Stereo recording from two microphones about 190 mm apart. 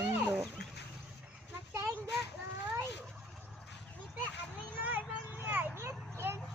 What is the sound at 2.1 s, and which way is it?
Children playing, 60° left (ahead or behind).